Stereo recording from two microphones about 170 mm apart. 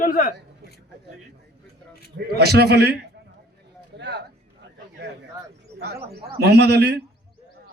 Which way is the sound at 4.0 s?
90° right.